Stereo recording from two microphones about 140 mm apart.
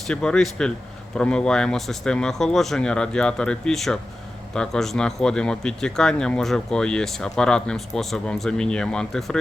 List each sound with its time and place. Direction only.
0.1 s speech: 5° left (ahead or behind)